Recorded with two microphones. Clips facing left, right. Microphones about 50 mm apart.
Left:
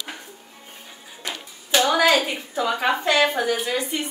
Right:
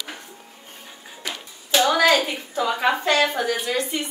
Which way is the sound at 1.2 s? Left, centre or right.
Centre.